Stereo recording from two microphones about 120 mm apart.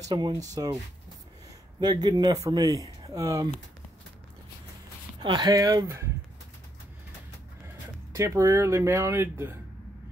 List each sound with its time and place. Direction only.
0.1 s speech: 40° right (ahead or behind)
1.8 s speech: 35° right (ahead or behind)
5.2 s speech: 35° right (ahead or behind)
7.6 s speech: 25° right (ahead or behind)